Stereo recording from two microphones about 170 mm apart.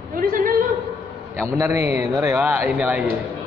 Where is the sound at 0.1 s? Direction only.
55° right (ahead or behind).